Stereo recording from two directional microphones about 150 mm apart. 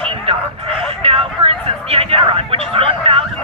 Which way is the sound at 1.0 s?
40° right (ahead or behind).